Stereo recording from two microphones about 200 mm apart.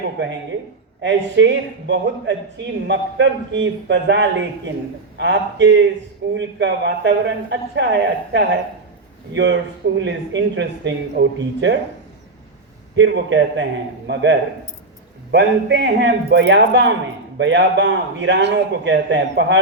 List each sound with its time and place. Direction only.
1.0 s a man's voice: 60° right (ahead or behind)
13.0 s a man's voice: 65° right (ahead or behind)